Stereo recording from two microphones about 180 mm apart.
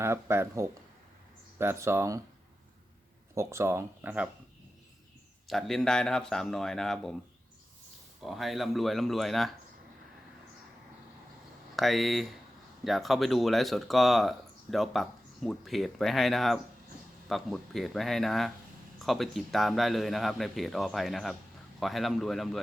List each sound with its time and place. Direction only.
0.0 s speech: 15° right (ahead or behind)
3.3 s speech: 15° right (ahead or behind)
5.5 s speech: centre (ahead or behind)
8.2 s speech: centre (ahead or behind)
11.8 s speech: centre (ahead or behind)